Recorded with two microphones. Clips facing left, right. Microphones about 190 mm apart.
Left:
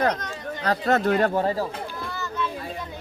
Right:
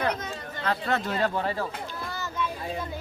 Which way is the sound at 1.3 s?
35° left (ahead or behind).